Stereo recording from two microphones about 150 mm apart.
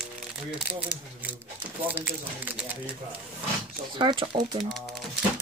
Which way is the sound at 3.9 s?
30° right (ahead or behind).